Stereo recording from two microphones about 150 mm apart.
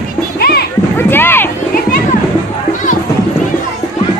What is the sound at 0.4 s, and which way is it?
Music, 90° left.